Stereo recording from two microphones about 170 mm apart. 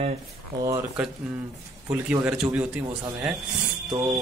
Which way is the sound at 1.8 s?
10° right (ahead or behind).